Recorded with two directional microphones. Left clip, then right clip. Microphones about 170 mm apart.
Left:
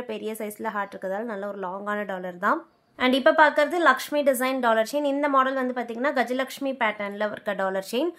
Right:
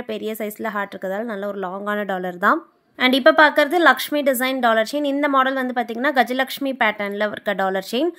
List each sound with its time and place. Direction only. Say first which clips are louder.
0.1 s speech: right 7 dB; 25° right (ahead or behind)